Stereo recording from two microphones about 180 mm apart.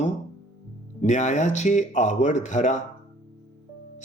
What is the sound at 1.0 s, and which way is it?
Speech, 40° left (ahead or behind).